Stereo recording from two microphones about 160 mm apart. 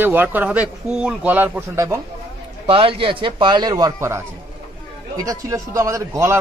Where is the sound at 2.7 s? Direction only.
35° right (ahead or behind).